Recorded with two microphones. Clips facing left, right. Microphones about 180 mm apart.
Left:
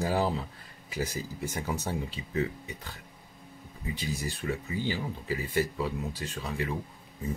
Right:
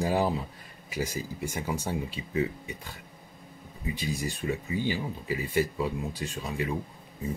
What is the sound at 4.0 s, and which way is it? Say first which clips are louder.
Speech: right 2 dB; 15° right (ahead or behind).